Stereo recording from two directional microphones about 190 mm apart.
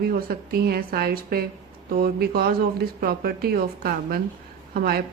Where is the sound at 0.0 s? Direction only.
55° right (ahead or behind).